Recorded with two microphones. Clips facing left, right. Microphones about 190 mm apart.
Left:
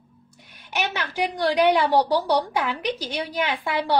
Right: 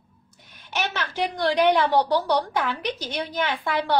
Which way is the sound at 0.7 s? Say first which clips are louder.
Left 1 dB; 15° left (ahead or behind).